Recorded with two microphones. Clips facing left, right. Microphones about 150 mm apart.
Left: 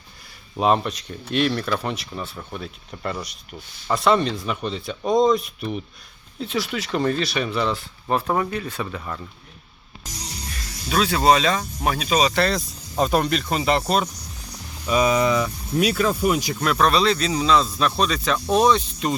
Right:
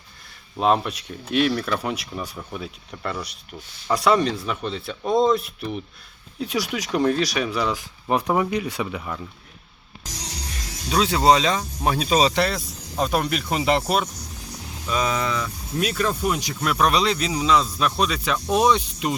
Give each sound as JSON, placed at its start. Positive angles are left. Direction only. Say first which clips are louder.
{"t": 0.5, "sound": "speech", "louder": "left 1 dB", "side_deg": 0}
{"t": 2.4, "sound": "speech", "louder": "even", "side_deg": 0}
{"t": 10.5, "sound": "speech", "louder": "even", "side_deg": -20}
{"t": 11.9, "sound": "speech", "louder": "right 1 dB", "side_deg": -35}
{"t": 12.3, "sound": "speech", "louder": "left 1 dB", "side_deg": -15}
{"t": 12.5, "sound": "speech", "louder": "left 3 dB", "side_deg": 0}
{"t": 14.8, "sound": "speech", "louder": "left 5 dB", "side_deg": 10}
{"t": 16.6, "sound": "speech", "louder": "right 1 dB", "side_deg": -5}